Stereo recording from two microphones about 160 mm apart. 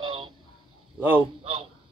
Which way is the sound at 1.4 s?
35° right (ahead or behind).